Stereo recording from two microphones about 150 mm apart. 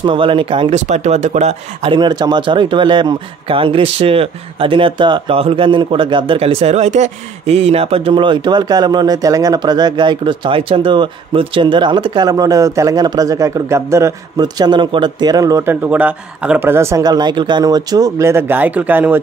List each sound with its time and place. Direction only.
0.0 s speech: 35° right (ahead or behind)
1.9 s speech: 30° right (ahead or behind); by 19.1 s 10° right (ahead or behind)